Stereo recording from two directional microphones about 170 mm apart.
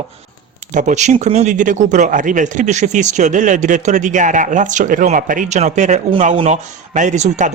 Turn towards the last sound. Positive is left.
turn(degrees=-45)  # may be behind; listen again after turning